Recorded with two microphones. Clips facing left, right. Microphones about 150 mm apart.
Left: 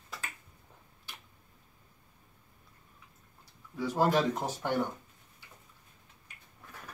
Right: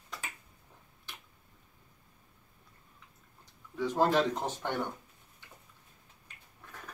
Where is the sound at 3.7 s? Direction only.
10° left (ahead or behind).